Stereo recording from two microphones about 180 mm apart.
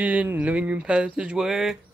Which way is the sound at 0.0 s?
10° right (ahead or behind).